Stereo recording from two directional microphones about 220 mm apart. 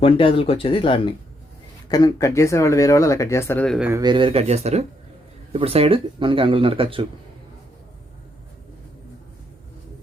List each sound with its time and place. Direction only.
0.0 s speech: 25° left (ahead or behind); by 3.8 s 5° left (ahead or behind)
3.8 s speech: 10° right (ahead or behind)
4.0 s speech: 20° right (ahead or behind)